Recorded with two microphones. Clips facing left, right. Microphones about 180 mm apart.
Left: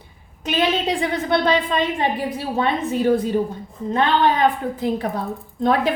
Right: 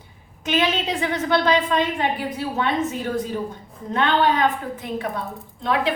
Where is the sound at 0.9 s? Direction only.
35° left (ahead or behind).